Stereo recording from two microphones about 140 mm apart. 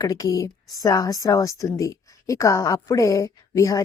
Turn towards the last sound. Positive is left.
turn(degrees=25)  # may be behind; listen again after turning